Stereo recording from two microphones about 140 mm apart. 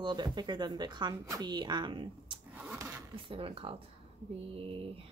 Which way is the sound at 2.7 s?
20° right (ahead or behind).